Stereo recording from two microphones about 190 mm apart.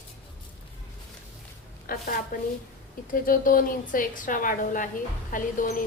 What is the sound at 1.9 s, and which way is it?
A woman's voice, 45° left (ahead or behind).